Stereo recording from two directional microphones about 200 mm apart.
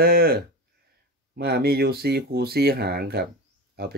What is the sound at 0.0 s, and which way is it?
Speech, 50° right (ahead or behind).